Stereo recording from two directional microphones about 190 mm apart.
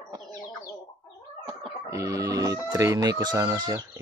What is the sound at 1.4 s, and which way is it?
Speech, 15° right (ahead or behind).